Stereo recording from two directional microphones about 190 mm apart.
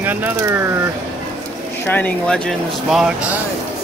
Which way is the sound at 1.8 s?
10° left (ahead or behind).